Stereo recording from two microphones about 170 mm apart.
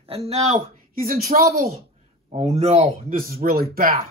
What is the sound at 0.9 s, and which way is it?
Speech, 55° right (ahead or behind).